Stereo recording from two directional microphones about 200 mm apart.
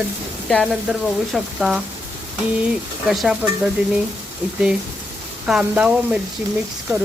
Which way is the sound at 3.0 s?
5° right (ahead or behind).